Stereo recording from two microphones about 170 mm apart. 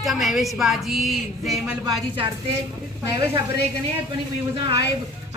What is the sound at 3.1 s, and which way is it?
Speech, 25° right (ahead or behind).